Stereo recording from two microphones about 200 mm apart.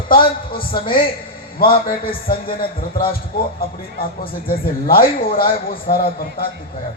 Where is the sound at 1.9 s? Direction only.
45° left (ahead or behind).